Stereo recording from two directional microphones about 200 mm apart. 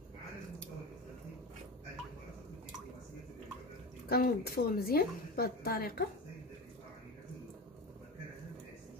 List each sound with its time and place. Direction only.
4.1 s a woman's voice: 50° left (ahead or behind)